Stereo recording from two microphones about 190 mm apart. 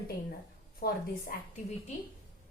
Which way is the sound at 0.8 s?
50° left (ahead or behind).